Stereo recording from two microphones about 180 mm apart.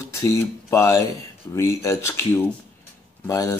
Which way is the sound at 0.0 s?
15° left (ahead or behind).